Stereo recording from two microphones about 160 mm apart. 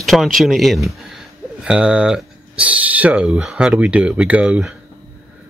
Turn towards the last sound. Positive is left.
turn(degrees=-5)  # may be behind; listen again after turning